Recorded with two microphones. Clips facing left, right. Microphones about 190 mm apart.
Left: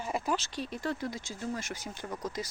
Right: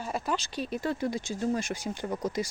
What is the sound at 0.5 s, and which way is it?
Speech, 5° right (ahead or behind).